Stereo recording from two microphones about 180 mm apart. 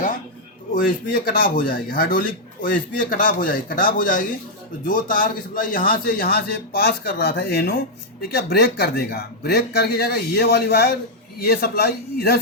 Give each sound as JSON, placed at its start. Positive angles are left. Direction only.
{"t": 0.7, "sound": "a man's voice", "side_deg": 50}